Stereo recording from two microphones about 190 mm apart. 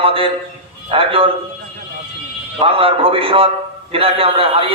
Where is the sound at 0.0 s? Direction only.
30° right (ahead or behind).